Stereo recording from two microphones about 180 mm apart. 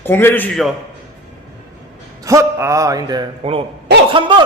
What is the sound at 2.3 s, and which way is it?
A man's voice, 15° right (ahead or behind).